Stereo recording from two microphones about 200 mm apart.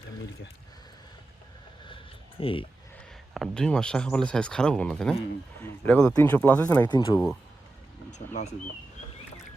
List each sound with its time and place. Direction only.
2.4 s speech: 25° left (ahead or behind)
3.3 s speech: centre (ahead or behind)
6.8 s speech: 20° left (ahead or behind)
8.3 s speech: 35° left (ahead or behind)